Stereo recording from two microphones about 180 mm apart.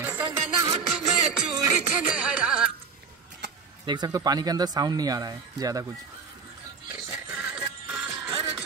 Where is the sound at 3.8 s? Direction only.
20° right (ahead or behind).